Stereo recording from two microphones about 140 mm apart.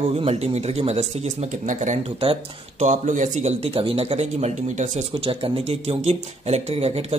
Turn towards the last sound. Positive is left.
turn(degrees=-50)  # may be behind; listen again after turning